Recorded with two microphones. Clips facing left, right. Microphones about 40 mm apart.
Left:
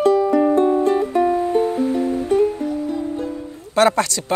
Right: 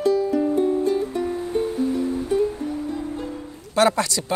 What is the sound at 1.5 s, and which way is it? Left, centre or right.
Music, left.